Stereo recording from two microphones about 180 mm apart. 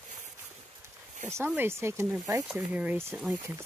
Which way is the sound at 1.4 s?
10° right (ahead or behind).